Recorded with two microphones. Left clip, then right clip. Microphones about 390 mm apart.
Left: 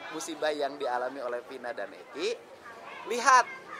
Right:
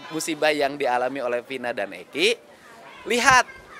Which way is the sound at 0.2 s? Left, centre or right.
Right.